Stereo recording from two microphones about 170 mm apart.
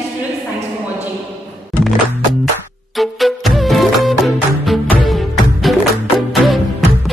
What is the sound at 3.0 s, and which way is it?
Music, centre (ahead or behind).